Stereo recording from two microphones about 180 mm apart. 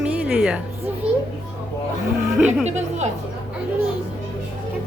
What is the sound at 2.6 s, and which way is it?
Speech, 40° right (ahead or behind).